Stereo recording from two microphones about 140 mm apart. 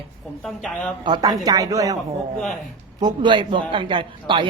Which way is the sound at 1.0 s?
30° right (ahead or behind).